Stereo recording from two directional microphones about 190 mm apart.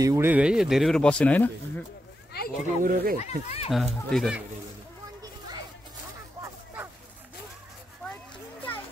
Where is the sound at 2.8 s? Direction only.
50° right (ahead or behind).